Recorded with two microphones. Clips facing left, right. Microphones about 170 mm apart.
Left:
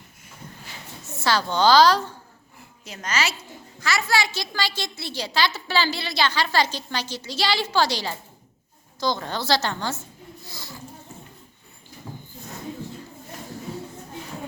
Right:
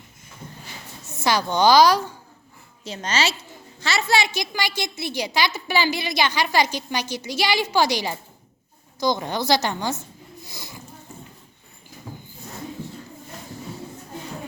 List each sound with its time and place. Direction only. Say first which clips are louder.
1.1 s a woman's voice: right 1 dB; 15° right (ahead or behind)
2.8 s a woman's voice: right 3 dB; 30° right (ahead or behind)
10.4 s a sound: even; 15° right (ahead or behind)